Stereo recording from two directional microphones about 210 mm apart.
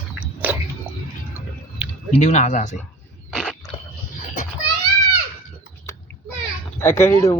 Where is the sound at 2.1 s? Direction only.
35° left (ahead or behind).